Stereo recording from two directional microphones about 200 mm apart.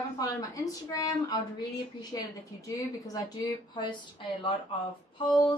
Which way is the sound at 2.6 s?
15° left (ahead or behind).